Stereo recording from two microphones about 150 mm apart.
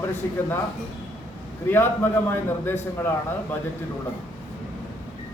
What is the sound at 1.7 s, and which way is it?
A man's voice, 15° left (ahead or behind).